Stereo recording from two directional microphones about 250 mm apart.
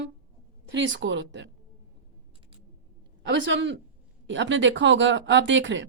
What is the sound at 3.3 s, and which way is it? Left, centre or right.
A woman's voice, right.